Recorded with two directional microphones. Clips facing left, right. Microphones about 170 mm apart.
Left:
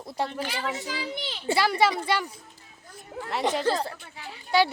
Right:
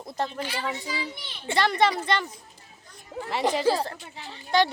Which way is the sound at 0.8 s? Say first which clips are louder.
Left 1 dB; 80° left.